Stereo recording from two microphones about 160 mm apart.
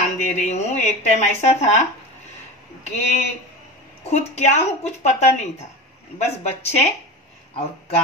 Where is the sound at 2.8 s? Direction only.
45° left (ahead or behind).